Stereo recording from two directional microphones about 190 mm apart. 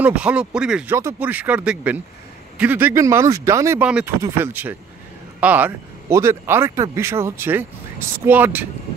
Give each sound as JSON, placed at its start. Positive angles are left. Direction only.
{"t": 0.0, "sound": "speech", "side_deg": -5}